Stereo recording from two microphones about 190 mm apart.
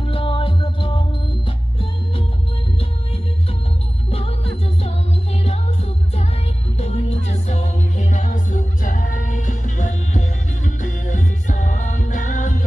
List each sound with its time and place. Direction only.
0.1 s music: 30° left (ahead or behind)
4.1 s music: 30° left (ahead or behind)